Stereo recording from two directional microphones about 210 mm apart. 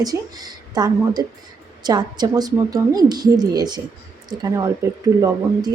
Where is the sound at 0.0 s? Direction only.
15° right (ahead or behind).